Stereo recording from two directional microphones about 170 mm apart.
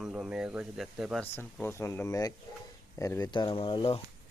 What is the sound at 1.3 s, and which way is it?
Speech, 15° left (ahead or behind).